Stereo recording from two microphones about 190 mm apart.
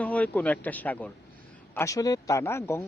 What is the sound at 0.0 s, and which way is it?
Speech, 5° left (ahead or behind).